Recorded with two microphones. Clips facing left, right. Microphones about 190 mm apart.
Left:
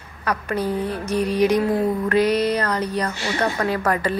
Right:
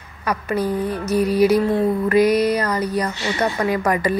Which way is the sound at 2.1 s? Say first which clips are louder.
Right 3 dB; 10° right (ahead or behind).